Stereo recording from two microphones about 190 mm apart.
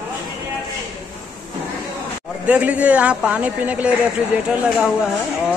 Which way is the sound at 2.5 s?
5° right (ahead or behind).